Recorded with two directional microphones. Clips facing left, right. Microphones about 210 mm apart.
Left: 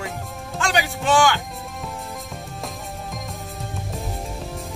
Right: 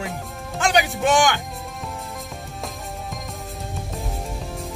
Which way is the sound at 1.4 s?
Centre (ahead or behind).